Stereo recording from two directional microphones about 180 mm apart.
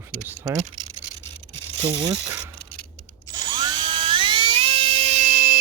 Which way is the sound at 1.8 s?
25° right (ahead or behind).